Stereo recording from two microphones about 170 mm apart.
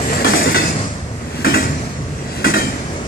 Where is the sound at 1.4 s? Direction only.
65° left (ahead or behind).